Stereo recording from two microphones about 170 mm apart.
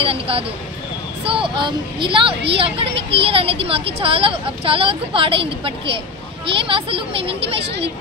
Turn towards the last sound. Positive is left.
turn(degrees=-35)  # may be behind; listen again after turning